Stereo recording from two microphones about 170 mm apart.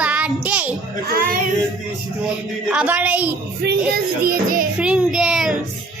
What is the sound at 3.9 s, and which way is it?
Music, 65° right (ahead or behind).